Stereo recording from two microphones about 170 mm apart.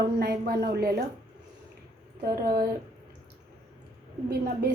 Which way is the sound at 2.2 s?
60° right (ahead or behind).